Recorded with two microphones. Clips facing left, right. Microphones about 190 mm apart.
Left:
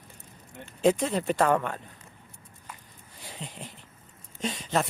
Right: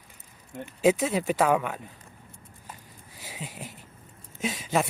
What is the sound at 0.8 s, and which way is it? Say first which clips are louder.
Speech: right 1 dB; 5° right (ahead or behind).